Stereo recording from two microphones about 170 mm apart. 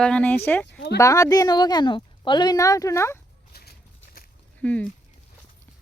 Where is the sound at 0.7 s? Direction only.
90° left.